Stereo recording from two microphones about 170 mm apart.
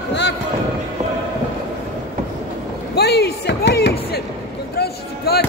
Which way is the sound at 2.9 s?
75° left (ahead or behind).